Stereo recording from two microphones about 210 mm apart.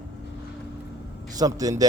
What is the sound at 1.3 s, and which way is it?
Speech, 15° right (ahead or behind).